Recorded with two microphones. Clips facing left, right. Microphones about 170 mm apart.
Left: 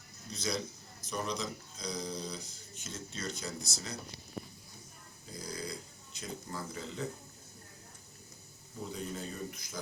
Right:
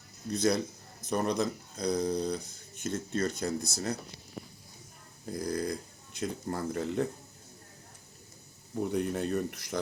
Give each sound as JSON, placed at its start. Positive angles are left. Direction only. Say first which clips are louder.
{"t": 0.3, "sound": "speech", "louder": "right 9 dB", "side_deg": -55}
{"t": 5.2, "sound": "a sound", "louder": "right 10 dB", "side_deg": -55}
{"t": 6.1, "sound": "speech", "louder": "right 8 dB", "side_deg": -55}
{"t": 8.8, "sound": "speech", "louder": "right 10 dB", "side_deg": -65}